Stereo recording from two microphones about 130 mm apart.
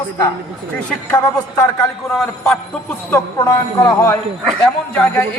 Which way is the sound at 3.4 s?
25° left (ahead or behind).